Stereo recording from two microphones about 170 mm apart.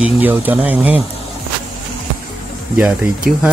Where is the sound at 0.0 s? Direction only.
10° right (ahead or behind).